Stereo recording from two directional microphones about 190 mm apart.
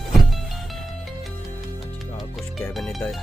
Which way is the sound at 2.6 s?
Centre (ahead or behind).